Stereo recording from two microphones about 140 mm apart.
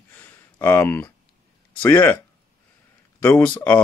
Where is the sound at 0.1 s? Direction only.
10° left (ahead or behind).